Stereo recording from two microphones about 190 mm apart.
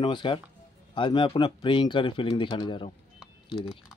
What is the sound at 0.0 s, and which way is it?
Speech, 25° left (ahead or behind).